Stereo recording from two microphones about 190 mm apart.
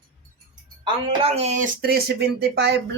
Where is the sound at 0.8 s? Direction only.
30° right (ahead or behind); by 2.8 s 60° right (ahead or behind).